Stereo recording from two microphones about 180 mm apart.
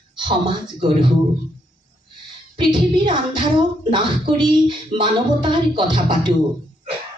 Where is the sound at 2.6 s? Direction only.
25° right (ahead or behind).